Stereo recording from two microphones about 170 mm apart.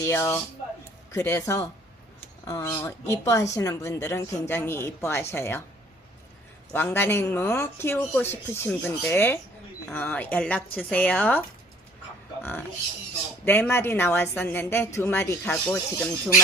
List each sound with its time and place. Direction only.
0.0 s speech: 15° left (ahead or behind)
6.7 s a man's voice: 10° left (ahead or behind)